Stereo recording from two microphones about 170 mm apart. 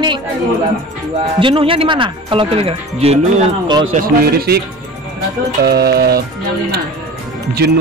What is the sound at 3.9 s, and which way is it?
Speech, 65° right (ahead or behind).